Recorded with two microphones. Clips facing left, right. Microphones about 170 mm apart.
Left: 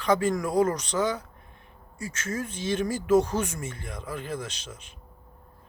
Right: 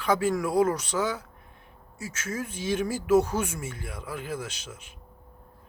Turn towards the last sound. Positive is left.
turn(degrees=-10)  # may be behind; listen again after turning